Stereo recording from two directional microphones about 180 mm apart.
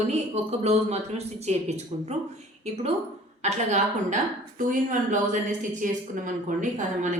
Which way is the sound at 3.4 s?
40° right (ahead or behind).